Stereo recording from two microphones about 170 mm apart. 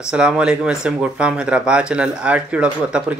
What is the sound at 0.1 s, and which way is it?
Speech, 5° right (ahead or behind).